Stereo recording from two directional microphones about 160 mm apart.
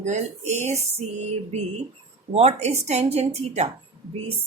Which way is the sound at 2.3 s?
40° right (ahead or behind).